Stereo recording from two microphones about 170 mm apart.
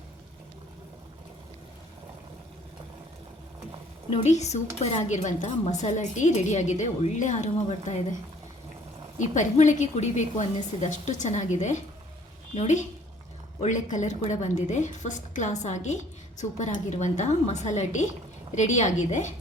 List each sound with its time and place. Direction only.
4.1 s a woman's voice: 40° left (ahead or behind)
9.1 s a woman's voice: 45° left (ahead or behind)